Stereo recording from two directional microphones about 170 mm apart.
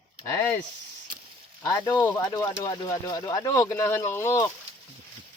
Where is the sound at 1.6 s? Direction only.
20° left (ahead or behind).